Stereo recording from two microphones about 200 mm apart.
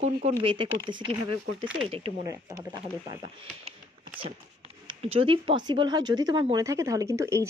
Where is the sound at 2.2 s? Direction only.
15° right (ahead or behind).